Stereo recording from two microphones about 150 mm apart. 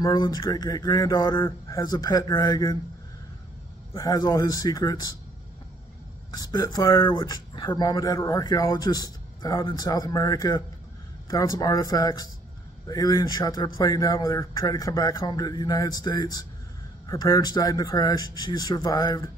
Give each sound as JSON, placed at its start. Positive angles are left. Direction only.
{"t": 0.0, "sound": "a man's voice", "side_deg": 25}
{"t": 4.0, "sound": "a man's voice", "side_deg": 25}
{"t": 6.3, "sound": "a man's voice", "side_deg": 25}